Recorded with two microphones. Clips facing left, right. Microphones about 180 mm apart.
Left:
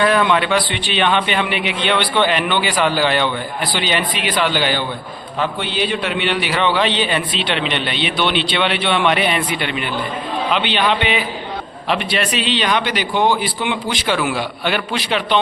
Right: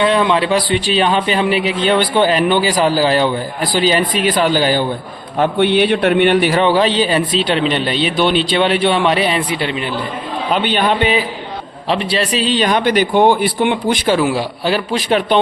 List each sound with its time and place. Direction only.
0.0 s a man's voice: 25° right (ahead or behind)
5.4 s a man's voice: 60° right (ahead or behind); by 9.9 s 30° right (ahead or behind)
10.5 s a man's voice: 45° right (ahead or behind)
11.9 s a man's voice: 30° right (ahead or behind); by 14.1 s 55° right (ahead or behind)
14.1 s a man's voice: 35° right (ahead or behind)